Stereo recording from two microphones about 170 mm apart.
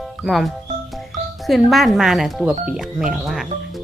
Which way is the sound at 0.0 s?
Centre (ahead or behind).